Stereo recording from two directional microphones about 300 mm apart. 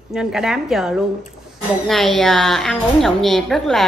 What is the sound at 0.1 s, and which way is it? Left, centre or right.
A woman's voice, centre.